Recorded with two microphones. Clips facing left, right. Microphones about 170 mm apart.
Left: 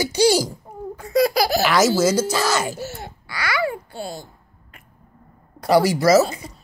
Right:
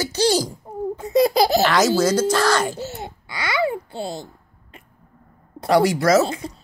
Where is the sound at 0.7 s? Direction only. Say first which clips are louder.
Right 6 dB; 25° right (ahead or behind).